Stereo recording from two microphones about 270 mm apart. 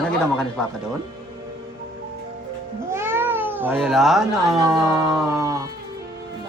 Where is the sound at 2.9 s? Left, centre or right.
Centre.